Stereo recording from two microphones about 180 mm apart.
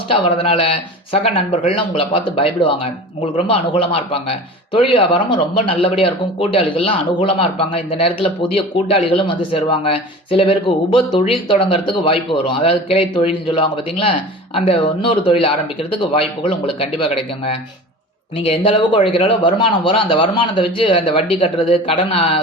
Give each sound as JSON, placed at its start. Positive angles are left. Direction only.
{"t": 0.1, "sound": "a man's voice", "side_deg": 30}